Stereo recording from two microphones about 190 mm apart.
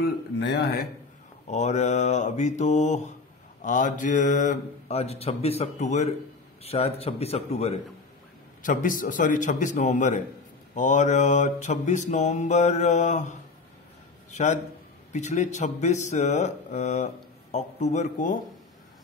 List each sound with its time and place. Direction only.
0.0 s speech: 65° left (ahead or behind)
1.5 s speech: 35° left (ahead or behind)
8.6 s a man's voice: 45° left (ahead or behind)